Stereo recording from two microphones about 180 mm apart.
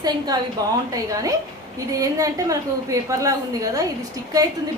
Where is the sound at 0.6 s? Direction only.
20° right (ahead or behind).